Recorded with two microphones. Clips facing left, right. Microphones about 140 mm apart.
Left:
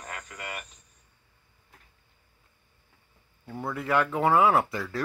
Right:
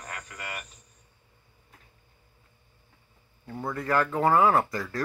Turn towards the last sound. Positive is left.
turn(degrees=5)  # may be behind; listen again after turning